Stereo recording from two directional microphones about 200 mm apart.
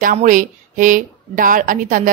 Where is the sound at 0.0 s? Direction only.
40° right (ahead or behind).